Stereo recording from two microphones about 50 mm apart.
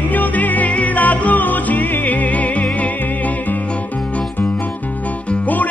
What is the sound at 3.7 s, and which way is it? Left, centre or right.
Music, left.